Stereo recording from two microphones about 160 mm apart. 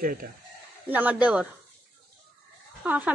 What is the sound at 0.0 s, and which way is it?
Speech, 60° right (ahead or behind).